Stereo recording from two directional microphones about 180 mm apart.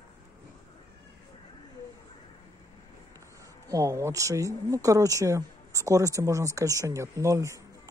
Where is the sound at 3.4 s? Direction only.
20° right (ahead or behind).